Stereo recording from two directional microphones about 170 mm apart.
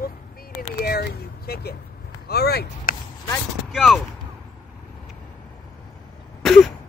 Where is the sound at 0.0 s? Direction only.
60° left (ahead or behind).